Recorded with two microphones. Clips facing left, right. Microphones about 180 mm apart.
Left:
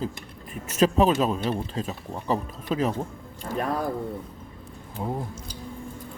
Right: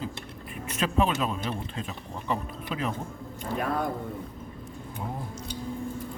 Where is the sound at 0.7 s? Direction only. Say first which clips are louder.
Left 6 dB; 40° left (ahead or behind).